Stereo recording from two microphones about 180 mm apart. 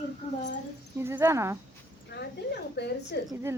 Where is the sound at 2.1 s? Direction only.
70° left (ahead or behind).